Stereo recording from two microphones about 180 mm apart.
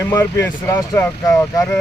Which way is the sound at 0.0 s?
15° left (ahead or behind).